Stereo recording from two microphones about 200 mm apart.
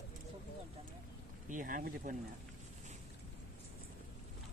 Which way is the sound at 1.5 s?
45° right (ahead or behind).